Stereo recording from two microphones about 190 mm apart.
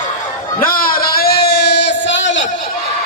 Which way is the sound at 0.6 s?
50° left (ahead or behind).